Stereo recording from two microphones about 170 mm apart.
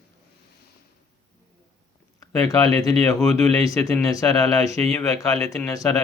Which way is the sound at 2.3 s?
20° left (ahead or behind).